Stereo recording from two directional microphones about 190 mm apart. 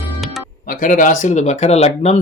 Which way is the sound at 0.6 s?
45° left (ahead or behind).